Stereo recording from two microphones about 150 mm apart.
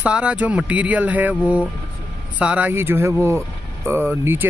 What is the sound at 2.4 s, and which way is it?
Speech, 10° right (ahead or behind).